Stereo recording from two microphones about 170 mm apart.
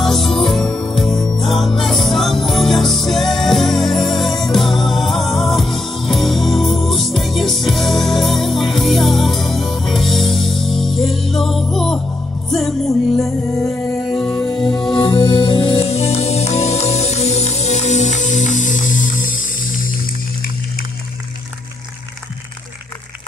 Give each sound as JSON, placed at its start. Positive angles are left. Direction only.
{"t": 0.0, "sound": "music", "side_deg": 0}
{"t": 15.0, "sound": "music", "side_deg": 30}